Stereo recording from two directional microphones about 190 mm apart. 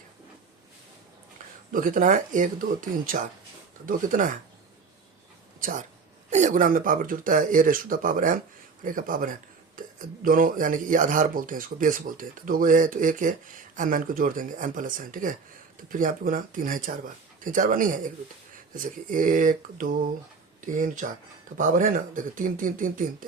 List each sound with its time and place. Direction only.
1.7 s speech: 45° right (ahead or behind)
5.5 s speech: 45° right (ahead or behind)